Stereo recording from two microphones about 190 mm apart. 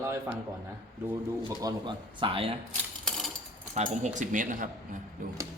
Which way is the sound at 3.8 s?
40° right (ahead or behind).